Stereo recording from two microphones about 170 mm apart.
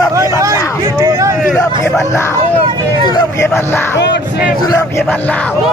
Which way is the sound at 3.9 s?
90° left.